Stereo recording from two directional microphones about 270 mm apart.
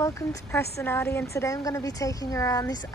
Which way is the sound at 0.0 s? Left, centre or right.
Centre.